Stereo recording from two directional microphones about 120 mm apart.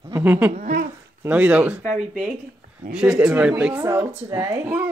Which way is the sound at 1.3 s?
10° right (ahead or behind).